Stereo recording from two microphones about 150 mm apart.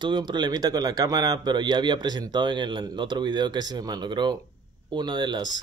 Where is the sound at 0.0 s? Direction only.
30° right (ahead or behind).